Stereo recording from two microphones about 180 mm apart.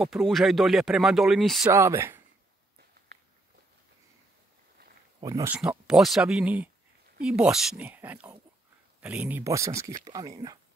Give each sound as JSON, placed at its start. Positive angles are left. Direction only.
{"t": 0.0, "sound": "speech", "side_deg": 0}
{"t": 1.7, "sound": "speech", "side_deg": -15}
{"t": 5.2, "sound": "speech", "side_deg": -20}
{"t": 5.5, "sound": "speech", "side_deg": -5}